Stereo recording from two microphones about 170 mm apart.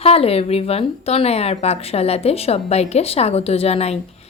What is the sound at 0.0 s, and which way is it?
A woman's voice, 35° left (ahead or behind).